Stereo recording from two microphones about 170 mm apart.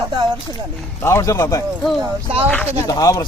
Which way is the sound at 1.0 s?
15° left (ahead or behind).